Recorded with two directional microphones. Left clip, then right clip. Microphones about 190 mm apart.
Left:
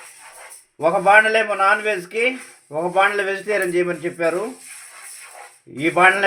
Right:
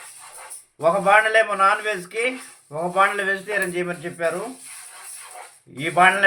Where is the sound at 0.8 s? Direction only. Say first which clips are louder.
Left 3 dB; 30° left (ahead or behind).